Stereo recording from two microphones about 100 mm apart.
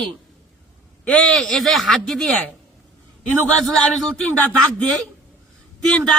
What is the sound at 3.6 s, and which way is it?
A man's voice, centre (ahead or behind).